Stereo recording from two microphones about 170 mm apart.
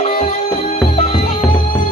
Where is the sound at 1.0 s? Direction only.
35° left (ahead or behind).